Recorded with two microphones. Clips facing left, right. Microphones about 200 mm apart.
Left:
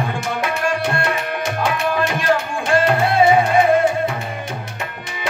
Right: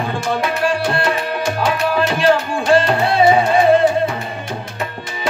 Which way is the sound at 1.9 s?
30° right (ahead or behind).